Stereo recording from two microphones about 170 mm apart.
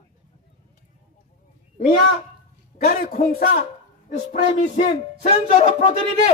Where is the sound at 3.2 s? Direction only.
35° left (ahead or behind).